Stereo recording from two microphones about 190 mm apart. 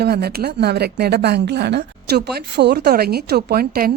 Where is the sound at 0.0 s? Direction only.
55° right (ahead or behind).